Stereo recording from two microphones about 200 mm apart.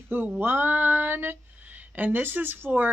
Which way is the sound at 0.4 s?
10° right (ahead or behind).